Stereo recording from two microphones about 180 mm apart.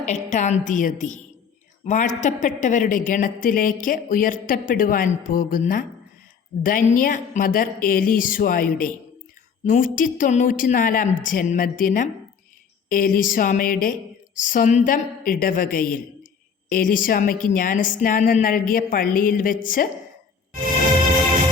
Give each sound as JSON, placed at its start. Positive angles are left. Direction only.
{"t": 0.0, "sound": "a woman's voice", "side_deg": 40}